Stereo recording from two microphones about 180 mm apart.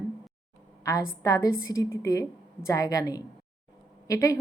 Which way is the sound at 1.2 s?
15° left (ahead or behind).